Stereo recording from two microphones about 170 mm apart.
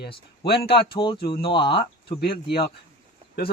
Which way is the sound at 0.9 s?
30° left (ahead or behind).